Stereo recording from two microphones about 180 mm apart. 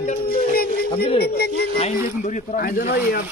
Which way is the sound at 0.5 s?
60° left (ahead or behind).